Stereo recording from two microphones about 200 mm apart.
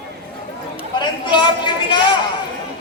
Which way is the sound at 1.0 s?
25° left (ahead or behind).